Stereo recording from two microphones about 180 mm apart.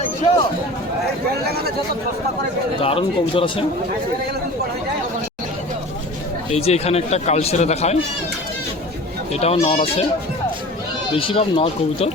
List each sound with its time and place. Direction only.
1.5 s speech: 60° right (ahead or behind)
2.8 s speech: 30° left (ahead or behind)
6.5 s speech: 35° left (ahead or behind)
9.3 s speech: 35° left (ahead or behind)
11.1 s speech: 30° left (ahead or behind)